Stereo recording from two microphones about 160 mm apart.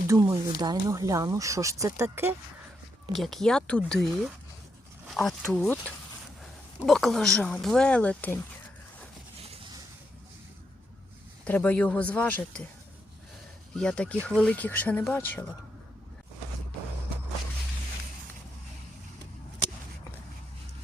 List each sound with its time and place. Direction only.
0.1 s speech: 20° right (ahead or behind)
3.2 s speech: centre (ahead or behind)
5.0 s a sound: centre (ahead or behind)
5.5 s speech: 10° left (ahead or behind)
6.8 s speech: centre (ahead or behind)
11.4 s speech: 10° left (ahead or behind)
13.7 s speech: 5° left (ahead or behind)